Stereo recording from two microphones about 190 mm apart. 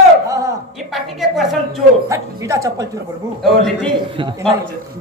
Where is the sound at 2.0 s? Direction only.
15° right (ahead or behind).